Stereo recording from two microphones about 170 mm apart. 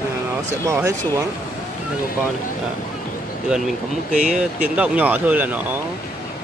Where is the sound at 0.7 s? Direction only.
15° right (ahead or behind).